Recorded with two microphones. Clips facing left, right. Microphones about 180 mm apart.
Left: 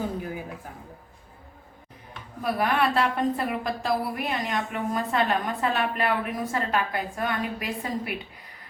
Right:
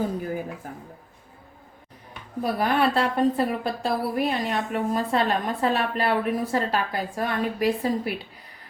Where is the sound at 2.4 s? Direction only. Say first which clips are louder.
Right 2 dB; 30° right (ahead or behind).